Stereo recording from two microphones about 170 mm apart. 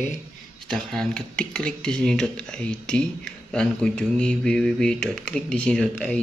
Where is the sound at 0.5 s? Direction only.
5° left (ahead or behind).